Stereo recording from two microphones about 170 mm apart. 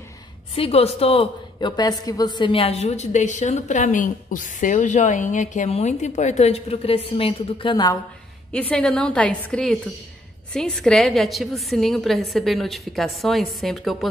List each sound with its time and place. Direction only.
0.6 s a woman's voice: 35° left (ahead or behind)
8.5 s a woman's voice: 5° left (ahead or behind)